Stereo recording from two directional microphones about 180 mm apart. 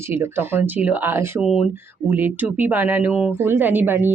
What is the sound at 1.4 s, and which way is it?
Speech, 5° right (ahead or behind).